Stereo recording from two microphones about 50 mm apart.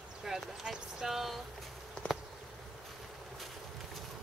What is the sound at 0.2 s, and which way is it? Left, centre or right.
Speech, centre.